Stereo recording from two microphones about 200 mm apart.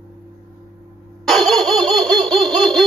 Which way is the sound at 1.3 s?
Centre (ahead or behind).